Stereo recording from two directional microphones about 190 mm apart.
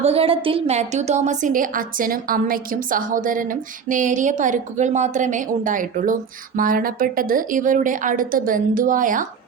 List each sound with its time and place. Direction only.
0.0 s a woman's voice: 30° right (ahead or behind)